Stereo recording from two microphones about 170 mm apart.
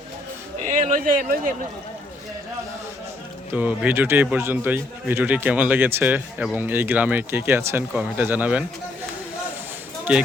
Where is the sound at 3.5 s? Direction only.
10° right (ahead or behind).